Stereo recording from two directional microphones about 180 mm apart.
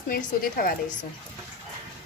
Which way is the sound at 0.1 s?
50° left (ahead or behind).